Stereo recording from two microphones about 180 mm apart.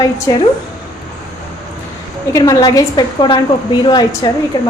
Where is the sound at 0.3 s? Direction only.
20° left (ahead or behind).